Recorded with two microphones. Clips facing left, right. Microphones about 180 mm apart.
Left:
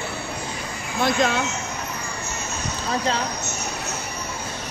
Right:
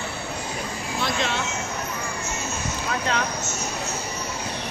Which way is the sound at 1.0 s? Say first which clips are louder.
Left 6 dB; 45° left (ahead or behind).